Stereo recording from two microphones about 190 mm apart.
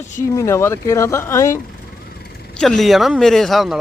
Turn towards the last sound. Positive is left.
turn(degrees=0)  # may be behind; listen again after turning